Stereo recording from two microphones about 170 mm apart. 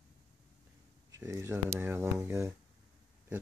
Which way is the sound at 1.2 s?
15° right (ahead or behind).